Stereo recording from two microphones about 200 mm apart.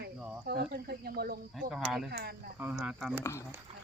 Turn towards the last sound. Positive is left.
turn(degrees=-5)  # may be behind; listen again after turning